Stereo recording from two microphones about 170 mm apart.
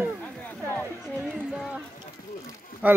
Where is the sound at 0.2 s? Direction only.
10° left (ahead or behind).